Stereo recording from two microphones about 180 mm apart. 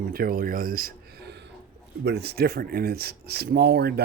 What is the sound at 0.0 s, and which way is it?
Speech, 55° right (ahead or behind).